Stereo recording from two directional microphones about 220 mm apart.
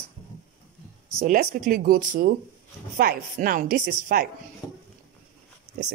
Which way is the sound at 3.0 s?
40° right (ahead or behind).